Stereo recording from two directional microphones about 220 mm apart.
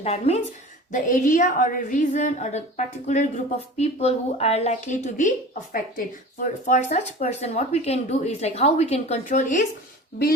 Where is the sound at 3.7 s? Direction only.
30° left (ahead or behind).